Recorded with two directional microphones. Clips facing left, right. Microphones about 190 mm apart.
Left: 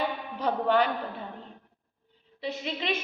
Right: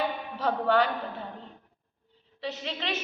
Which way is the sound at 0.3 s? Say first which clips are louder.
Even; 15° left (ahead or behind).